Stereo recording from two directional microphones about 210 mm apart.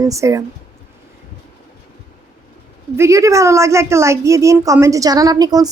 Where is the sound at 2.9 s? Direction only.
15° right (ahead or behind).